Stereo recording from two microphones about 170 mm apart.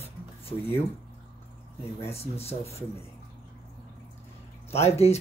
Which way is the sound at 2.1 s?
35° left (ahead or behind).